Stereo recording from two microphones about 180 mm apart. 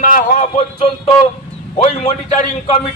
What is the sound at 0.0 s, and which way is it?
A man's voice, 45° left (ahead or behind).